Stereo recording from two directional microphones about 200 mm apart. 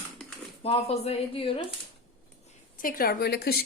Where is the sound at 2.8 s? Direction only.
45° left (ahead or behind).